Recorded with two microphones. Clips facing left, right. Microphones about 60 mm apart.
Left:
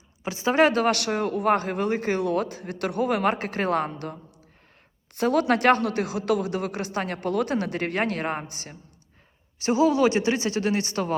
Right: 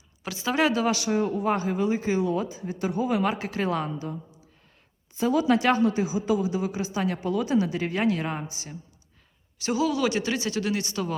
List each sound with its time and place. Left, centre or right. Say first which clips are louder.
0.2 s a man's voice: left 4 dB; left
9.6 s a man's voice: left 5 dB; left